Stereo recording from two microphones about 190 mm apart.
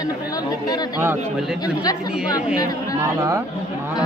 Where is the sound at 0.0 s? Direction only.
20° left (ahead or behind).